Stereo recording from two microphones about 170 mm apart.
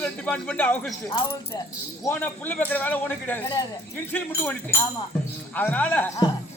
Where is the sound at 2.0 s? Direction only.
10° left (ahead or behind).